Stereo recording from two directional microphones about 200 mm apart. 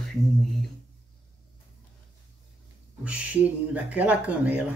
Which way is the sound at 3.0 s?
5° right (ahead or behind).